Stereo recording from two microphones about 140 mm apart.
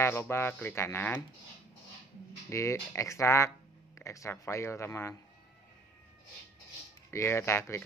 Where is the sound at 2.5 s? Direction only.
20° left (ahead or behind).